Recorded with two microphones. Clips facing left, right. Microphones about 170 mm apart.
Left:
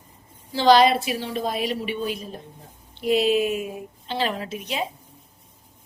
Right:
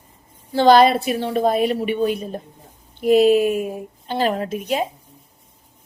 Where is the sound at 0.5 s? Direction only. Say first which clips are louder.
Right 3 dB; 55° right (ahead or behind).